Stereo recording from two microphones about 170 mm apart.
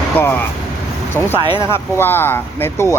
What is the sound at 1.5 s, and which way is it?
Speech, 30° right (ahead or behind).